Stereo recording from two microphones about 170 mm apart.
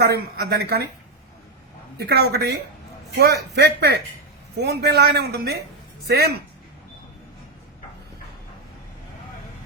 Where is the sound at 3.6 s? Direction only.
75° right (ahead or behind).